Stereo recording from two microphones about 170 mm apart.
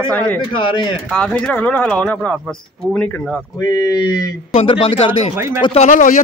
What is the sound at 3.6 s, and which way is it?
Speech, 20° left (ahead or behind).